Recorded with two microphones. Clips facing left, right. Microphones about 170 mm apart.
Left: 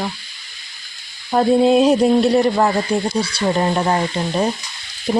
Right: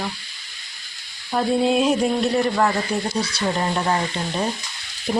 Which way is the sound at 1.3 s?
40° left (ahead or behind).